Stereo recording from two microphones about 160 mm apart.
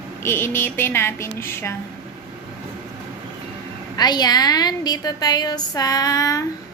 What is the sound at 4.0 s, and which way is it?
A woman's voice, 25° left (ahead or behind).